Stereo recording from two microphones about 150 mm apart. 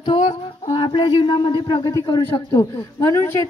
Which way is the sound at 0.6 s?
30° left (ahead or behind).